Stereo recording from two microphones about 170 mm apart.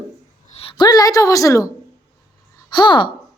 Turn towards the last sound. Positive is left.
turn(degrees=25)  # may be behind; listen again after turning